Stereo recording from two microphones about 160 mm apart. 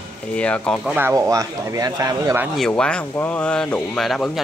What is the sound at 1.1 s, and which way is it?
Speech, 20° right (ahead or behind).